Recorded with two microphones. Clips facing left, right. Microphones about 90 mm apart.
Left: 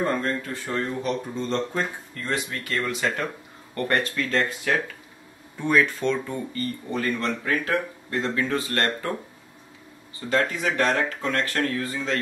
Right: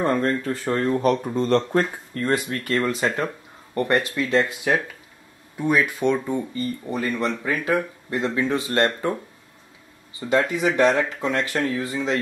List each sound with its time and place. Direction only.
0.0 s speech: 35° right (ahead or behind)
0.7 s speech: 45° right (ahead or behind)
1.3 s speech: 55° right (ahead or behind)
2.8 s speech: 35° right (ahead or behind)
3.9 s speech: 15° right (ahead or behind)
10.3 s speech: 15° right (ahead or behind)